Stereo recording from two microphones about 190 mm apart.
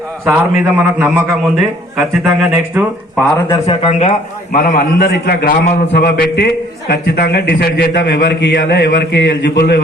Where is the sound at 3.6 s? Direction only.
30° left (ahead or behind).